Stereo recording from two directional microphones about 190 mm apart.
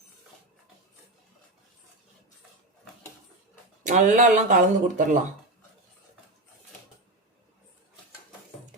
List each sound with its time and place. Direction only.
3.8 s speech: 40° right (ahead or behind)